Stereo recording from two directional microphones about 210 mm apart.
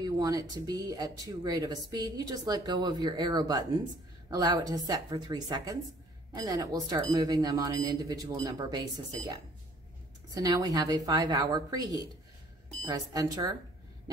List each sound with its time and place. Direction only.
0.0 s speech: 15° right (ahead or behind)